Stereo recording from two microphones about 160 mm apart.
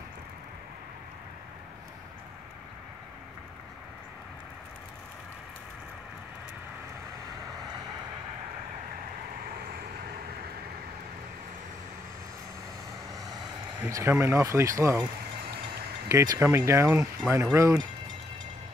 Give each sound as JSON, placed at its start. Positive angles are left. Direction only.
{"t": 13.1, "sound": "vehicle", "side_deg": -20}
{"t": 13.8, "sound": "speech", "side_deg": -20}
{"t": 16.1, "sound": "speech", "side_deg": -20}